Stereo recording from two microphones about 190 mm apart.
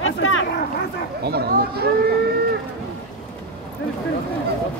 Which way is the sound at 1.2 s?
55° right (ahead or behind).